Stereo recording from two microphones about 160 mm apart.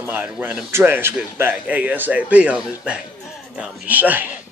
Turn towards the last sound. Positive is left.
turn(degrees=-10)  # may be behind; listen again after turning